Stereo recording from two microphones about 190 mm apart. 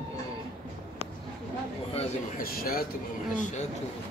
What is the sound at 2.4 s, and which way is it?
Speech, 50° left (ahead or behind).